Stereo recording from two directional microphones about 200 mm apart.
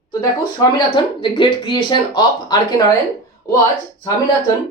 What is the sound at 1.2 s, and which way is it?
Speech, 25° left (ahead or behind).